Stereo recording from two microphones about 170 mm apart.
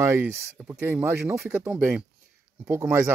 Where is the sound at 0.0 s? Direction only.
15° right (ahead or behind).